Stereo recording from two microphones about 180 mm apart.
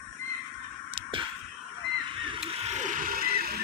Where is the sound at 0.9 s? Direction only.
30° right (ahead or behind).